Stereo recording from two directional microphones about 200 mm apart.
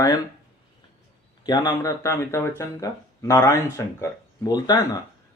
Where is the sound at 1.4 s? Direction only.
20° left (ahead or behind).